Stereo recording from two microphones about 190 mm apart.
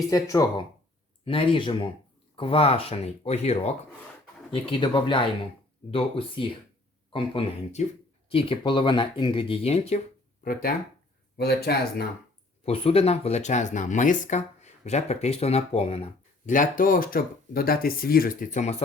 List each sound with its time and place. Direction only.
0.1 s speech: 20° left (ahead or behind)
1.2 s speech: 30° left (ahead or behind)
10.4 s speech: 50° left (ahead or behind)
12.6 s speech: 30° left (ahead or behind)
16.5 s speech: 45° left (ahead or behind)